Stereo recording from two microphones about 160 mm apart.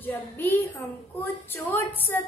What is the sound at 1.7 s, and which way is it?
Speech, 15° left (ahead or behind).